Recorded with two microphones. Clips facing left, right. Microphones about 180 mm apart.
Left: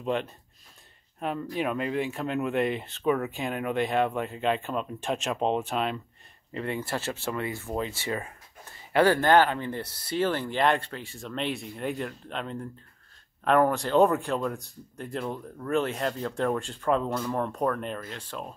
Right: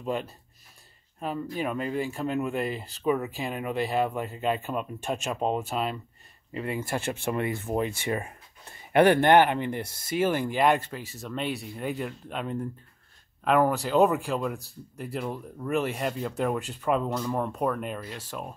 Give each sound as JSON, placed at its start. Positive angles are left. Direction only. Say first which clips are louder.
{"t": 0.0, "sound": "speech", "louder": "left 2 dB", "side_deg": -5}